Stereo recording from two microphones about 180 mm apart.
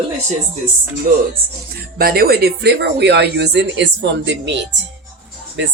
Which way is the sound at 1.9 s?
55° right (ahead or behind).